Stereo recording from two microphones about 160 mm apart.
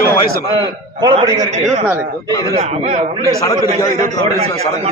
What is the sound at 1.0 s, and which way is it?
Speech, 25° right (ahead or behind).